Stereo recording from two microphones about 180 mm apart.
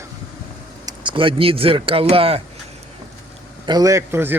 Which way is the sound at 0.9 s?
25° right (ahead or behind).